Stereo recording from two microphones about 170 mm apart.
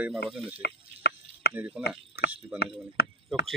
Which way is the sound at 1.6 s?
10° right (ahead or behind).